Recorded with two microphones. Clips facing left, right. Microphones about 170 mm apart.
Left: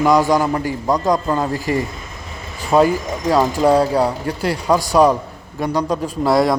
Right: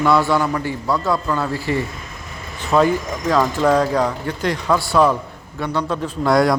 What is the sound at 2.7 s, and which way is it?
A man's voice, 10° left (ahead or behind).